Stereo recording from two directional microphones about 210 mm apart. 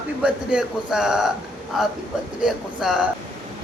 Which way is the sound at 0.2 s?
5° right (ahead or behind).